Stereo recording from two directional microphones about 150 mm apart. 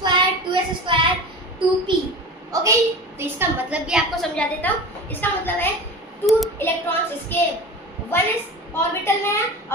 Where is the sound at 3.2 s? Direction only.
10° right (ahead or behind).